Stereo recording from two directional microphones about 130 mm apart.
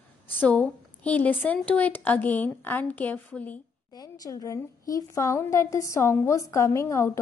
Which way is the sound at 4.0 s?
30° left (ahead or behind).